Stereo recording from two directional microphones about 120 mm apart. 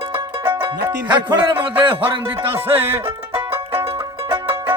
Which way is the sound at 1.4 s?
45° right (ahead or behind).